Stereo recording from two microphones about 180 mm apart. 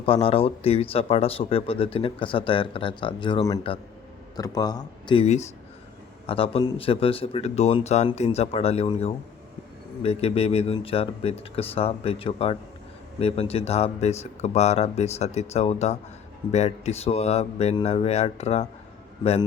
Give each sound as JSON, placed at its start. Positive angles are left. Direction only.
{"t": 0.0, "sound": "speech", "side_deg": 30}
{"t": 19.2, "sound": "speech", "side_deg": 25}